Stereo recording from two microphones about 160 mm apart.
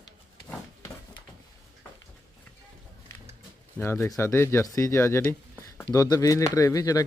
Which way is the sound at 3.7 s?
15° left (ahead or behind).